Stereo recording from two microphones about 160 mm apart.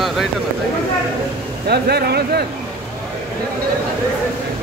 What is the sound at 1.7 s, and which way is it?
Speech, 90° right.